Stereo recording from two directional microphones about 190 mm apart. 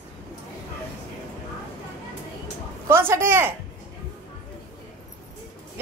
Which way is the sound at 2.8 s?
10° right (ahead or behind).